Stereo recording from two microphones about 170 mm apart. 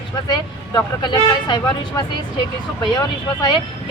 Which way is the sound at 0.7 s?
25° left (ahead or behind).